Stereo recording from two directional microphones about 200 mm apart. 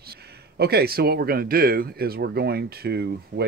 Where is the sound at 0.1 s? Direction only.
55° right (ahead or behind).